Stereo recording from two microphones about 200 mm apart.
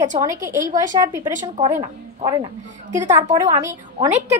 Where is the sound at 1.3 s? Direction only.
35° right (ahead or behind).